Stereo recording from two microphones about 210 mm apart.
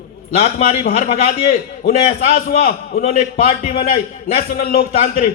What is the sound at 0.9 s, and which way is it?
A man's voice, 30° left (ahead or behind).